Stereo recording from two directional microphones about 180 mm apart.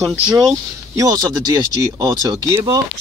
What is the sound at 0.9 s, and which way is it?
Speech, 20° right (ahead or behind).